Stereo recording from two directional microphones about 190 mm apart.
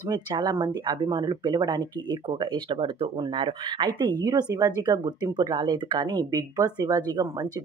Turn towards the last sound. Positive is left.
turn(degrees=-20)  # may be behind; listen again after turning